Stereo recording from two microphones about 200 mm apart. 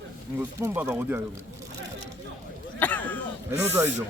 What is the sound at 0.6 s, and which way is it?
Speech, 10° right (ahead or behind).